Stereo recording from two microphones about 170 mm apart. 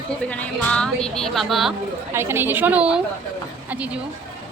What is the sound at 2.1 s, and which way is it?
Speech, 15° right (ahead or behind).